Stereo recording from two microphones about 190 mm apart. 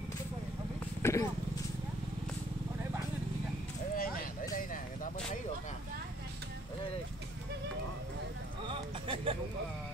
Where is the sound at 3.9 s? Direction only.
50° left (ahead or behind).